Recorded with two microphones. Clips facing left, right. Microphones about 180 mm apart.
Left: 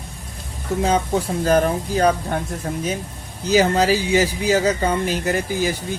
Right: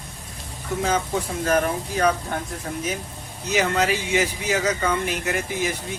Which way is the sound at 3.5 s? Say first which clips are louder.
Left 5 dB; 35° left (ahead or behind).